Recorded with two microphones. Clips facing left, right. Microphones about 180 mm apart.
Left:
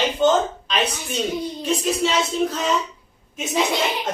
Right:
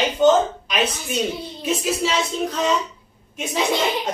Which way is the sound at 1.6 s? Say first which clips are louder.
Even; 5° right (ahead or behind).